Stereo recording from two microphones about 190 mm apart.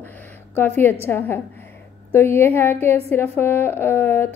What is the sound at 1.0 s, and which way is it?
A woman's voice, 10° left (ahead or behind).